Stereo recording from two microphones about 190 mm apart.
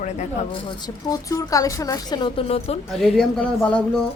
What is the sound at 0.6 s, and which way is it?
A woman's voice, 20° left (ahead or behind).